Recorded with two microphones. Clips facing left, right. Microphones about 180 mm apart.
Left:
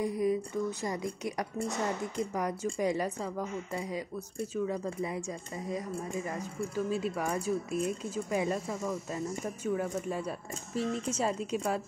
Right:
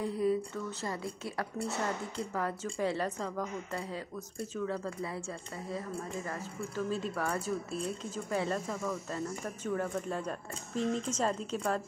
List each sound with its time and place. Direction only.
0.0 s speech: 15° left (ahead or behind)